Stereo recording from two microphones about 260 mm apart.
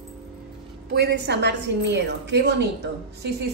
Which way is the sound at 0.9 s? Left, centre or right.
Right.